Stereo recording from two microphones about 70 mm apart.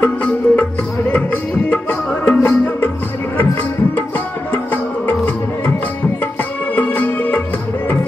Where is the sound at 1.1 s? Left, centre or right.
Left.